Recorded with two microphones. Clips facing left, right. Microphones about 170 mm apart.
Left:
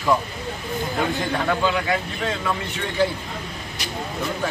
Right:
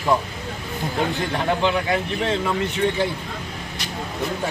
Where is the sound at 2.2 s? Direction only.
25° right (ahead or behind).